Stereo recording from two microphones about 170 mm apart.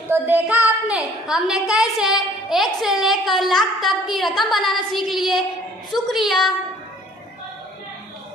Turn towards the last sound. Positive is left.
turn(degrees=0)  # may be behind; listen again after turning